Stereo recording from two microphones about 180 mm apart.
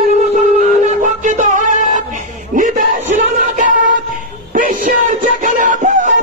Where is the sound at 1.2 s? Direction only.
45° right (ahead or behind).